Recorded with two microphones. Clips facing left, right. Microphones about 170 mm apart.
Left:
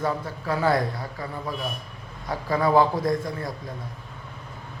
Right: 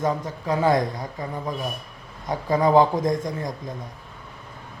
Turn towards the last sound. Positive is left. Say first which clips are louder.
# right 2 dB
turn(degrees=-15)  # may be behind; listen again after turning